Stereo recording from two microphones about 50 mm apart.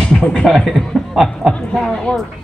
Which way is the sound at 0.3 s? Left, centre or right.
Centre.